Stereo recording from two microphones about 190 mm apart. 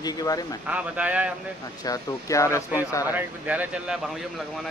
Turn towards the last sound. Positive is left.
turn(degrees=-5)  # may be behind; listen again after turning